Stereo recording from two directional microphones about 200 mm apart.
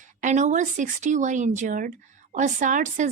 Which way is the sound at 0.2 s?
35° right (ahead or behind).